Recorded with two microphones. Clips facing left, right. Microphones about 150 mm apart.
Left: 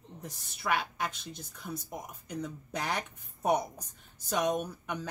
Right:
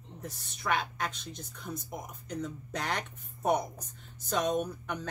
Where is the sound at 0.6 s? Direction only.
5° left (ahead or behind).